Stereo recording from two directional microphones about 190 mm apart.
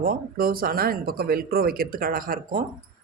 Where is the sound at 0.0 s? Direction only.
50° right (ahead or behind).